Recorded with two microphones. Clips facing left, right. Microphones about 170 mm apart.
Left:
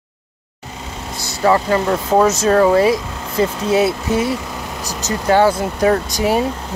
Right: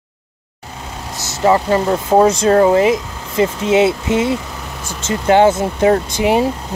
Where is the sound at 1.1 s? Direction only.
40° right (ahead or behind).